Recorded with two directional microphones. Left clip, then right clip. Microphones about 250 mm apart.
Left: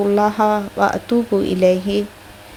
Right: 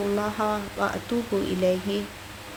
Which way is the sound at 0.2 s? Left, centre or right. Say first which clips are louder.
Left 11 dB; left.